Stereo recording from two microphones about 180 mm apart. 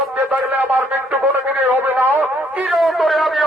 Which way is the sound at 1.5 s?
10° right (ahead or behind).